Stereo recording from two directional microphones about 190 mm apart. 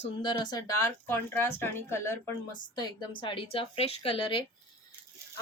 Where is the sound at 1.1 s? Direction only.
10° left (ahead or behind); by 4.4 s 30° left (ahead or behind).